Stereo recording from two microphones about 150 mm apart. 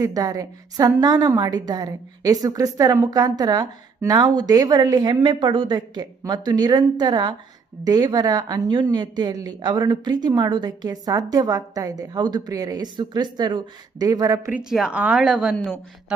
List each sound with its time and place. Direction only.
0.0 s a woman's voice: 25° right (ahead or behind)
14.5 s speech: 5° right (ahead or behind)